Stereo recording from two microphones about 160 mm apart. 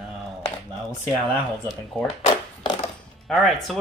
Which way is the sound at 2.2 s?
35° left (ahead or behind).